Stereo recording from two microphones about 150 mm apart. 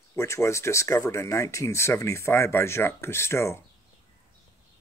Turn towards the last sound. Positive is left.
turn(degrees=20)  # may be behind; listen again after turning